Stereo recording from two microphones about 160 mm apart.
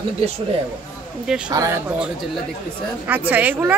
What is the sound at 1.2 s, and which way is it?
Speech, 5° right (ahead or behind).